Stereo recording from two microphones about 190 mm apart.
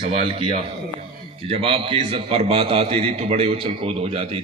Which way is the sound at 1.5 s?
30° right (ahead or behind).